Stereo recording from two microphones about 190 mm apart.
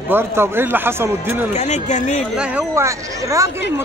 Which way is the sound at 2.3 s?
5° right (ahead or behind).